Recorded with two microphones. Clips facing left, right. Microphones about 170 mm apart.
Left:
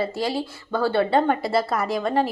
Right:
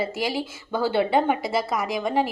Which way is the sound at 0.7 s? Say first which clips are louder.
Left 1 dB; 20° right (ahead or behind).